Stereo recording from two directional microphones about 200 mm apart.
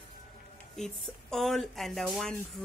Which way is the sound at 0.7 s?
Centre (ahead or behind).